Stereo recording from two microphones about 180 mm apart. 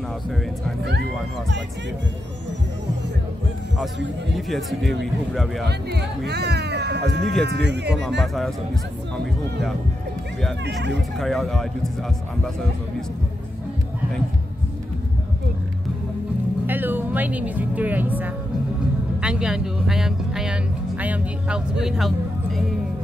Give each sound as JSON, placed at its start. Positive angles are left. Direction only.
{"t": 4.4, "sound": "speech", "side_deg": 0}
{"t": 5.7, "sound": "speech", "side_deg": -65}
{"t": 9.1, "sound": "speech", "side_deg": 0}
{"t": 11.1, "sound": "speech", "side_deg": 0}
{"t": 16.6, "sound": "speech", "side_deg": -10}